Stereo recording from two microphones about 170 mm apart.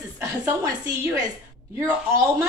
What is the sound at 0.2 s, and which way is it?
Speech, 20° right (ahead or behind).